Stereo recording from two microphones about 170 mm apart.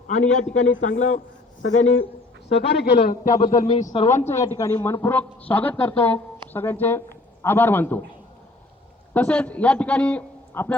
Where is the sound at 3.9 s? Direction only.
35° left (ahead or behind).